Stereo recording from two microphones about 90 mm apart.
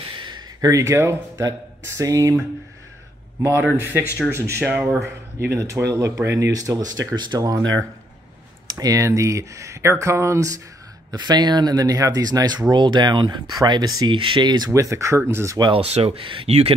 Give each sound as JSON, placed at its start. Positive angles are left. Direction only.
{"t": 0.2, "sound": "a sound", "side_deg": -55}
{"t": 0.7, "sound": "speech", "side_deg": -35}
{"t": 3.4, "sound": "a man's voice", "side_deg": -25}
{"t": 8.6, "sound": "speech", "side_deg": -40}
{"t": 11.1, "sound": "speech", "side_deg": -50}
{"t": 14.1, "sound": "speech", "side_deg": -65}
{"t": 14.7, "sound": "speech", "side_deg": -35}
{"t": 15.7, "sound": "speech", "side_deg": -90}